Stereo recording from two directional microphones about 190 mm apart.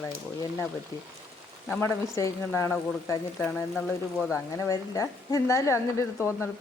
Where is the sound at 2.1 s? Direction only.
15° left (ahead or behind).